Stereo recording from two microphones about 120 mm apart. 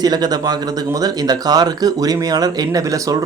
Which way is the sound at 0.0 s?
35° right (ahead or behind).